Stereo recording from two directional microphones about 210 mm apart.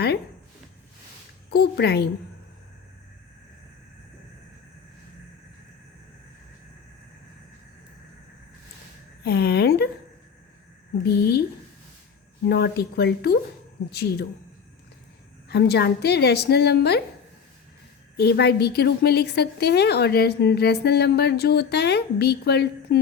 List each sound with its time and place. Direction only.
1.5 s a woman's voice: 50° left (ahead or behind)
9.2 s a woman's voice: 50° left (ahead or behind)
11.0 s a woman's voice: 50° left (ahead or behind)
12.5 s a woman's voice: 50° left (ahead or behind)
15.4 s a woman's voice: 50° left (ahead or behind)
18.2 s a woman's voice: 50° left (ahead or behind)